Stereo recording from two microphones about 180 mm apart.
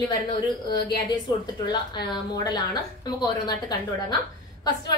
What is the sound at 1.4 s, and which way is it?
A woman's voice, 25° left (ahead or behind).